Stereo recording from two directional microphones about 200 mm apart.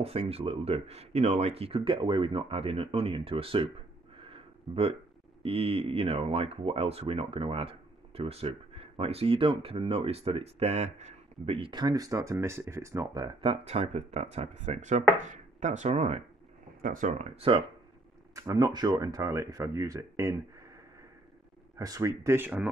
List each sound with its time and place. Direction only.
0.0 s speech: 30° right (ahead or behind)
4.3 s a sound: 30° right (ahead or behind)
5.4 s speech: 30° right (ahead or behind)
18.3 s speech: 15° right (ahead or behind)
21.7 s speech: 15° right (ahead or behind)